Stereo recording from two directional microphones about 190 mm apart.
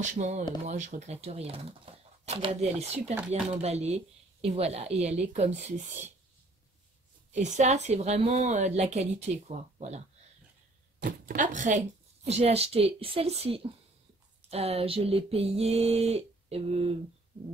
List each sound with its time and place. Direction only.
0.0 s speech: 40° right (ahead or behind)
7.3 s speech: 40° right (ahead or behind)
11.0 s speech: 50° right (ahead or behind); by 16.9 s 30° right (ahead or behind)